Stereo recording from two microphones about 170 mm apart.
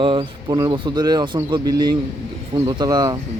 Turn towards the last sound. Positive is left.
turn(degrees=-20)  # may be behind; listen again after turning